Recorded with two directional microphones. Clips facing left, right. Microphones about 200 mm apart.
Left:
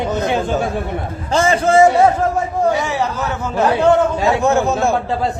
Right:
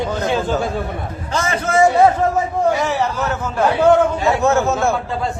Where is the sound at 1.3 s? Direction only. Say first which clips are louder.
Left 6 dB; 30° left (ahead or behind).